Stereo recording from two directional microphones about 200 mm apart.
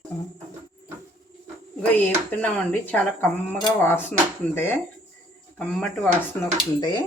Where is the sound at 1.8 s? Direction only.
5° left (ahead or behind).